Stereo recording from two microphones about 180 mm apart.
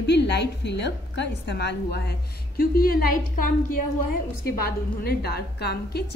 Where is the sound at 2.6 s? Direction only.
55° left (ahead or behind).